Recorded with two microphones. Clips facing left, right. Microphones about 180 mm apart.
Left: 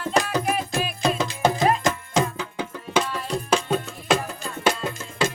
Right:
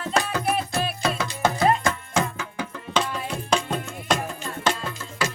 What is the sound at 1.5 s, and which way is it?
Music, 20° left (ahead or behind).